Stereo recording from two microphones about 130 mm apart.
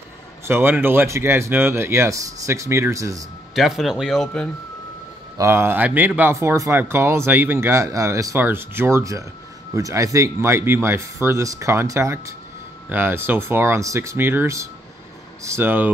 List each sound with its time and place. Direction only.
0.5 s speech: 15° right (ahead or behind)
3.5 s speech: centre (ahead or behind)
5.4 s speech: 20° right (ahead or behind)